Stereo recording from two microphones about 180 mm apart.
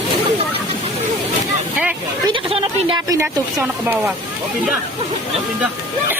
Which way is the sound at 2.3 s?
25° right (ahead or behind).